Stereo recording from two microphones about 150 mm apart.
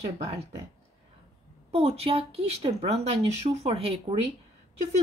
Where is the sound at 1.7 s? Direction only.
45° right (ahead or behind).